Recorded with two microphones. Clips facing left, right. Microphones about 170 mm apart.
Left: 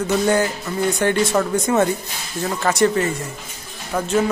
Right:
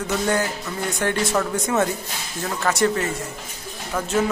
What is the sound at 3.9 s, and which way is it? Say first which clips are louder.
Speech: left 3 dB; 15° left (ahead or behind).